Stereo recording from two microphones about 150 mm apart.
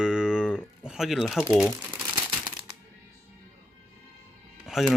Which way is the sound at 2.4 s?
30° right (ahead or behind).